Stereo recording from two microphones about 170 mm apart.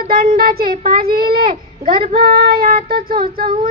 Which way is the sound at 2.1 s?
60° right (ahead or behind).